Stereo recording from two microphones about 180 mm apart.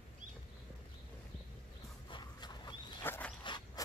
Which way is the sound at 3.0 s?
10° left (ahead or behind).